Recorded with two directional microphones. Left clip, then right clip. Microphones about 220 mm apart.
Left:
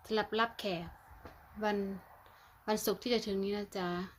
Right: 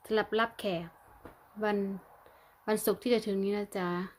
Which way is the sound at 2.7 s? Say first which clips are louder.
Right 4 dB; 10° right (ahead or behind).